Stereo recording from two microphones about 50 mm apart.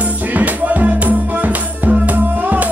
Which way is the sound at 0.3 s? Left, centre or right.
Right.